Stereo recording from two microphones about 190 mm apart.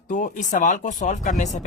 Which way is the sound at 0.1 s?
40° left (ahead or behind).